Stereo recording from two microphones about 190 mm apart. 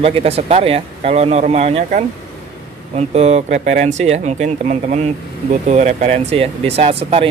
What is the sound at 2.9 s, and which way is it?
Speech, 35° right (ahead or behind).